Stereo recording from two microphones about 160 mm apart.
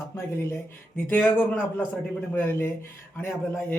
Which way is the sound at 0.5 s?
10° left (ahead or behind).